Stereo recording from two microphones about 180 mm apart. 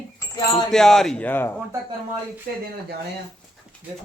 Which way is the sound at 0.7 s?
Centre (ahead or behind).